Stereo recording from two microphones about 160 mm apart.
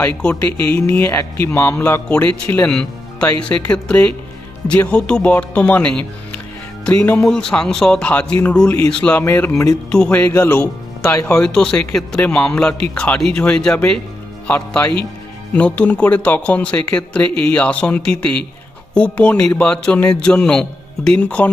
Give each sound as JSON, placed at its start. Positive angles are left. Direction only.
{"t": 0.0, "sound": "speech", "side_deg": 10}
{"t": 7.0, "sound": "speech", "side_deg": 20}
{"t": 7.3, "sound": "speech", "side_deg": 5}